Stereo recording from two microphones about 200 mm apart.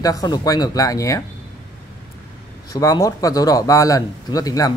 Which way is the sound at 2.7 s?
15° left (ahead or behind).